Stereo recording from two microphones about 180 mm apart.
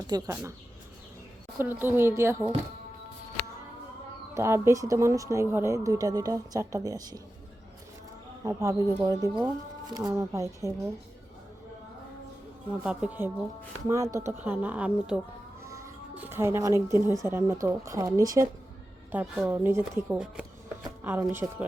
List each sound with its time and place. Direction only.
0.1 s speech: 20° right (ahead or behind)
1.5 s speech: 10° right (ahead or behind)
4.4 s speech: 15° right (ahead or behind)
8.4 s speech: 20° right (ahead or behind)
12.8 s speech: 5° right (ahead or behind)
15.6 s speech: 15° right (ahead or behind)
19.1 s speech: 5° right (ahead or behind)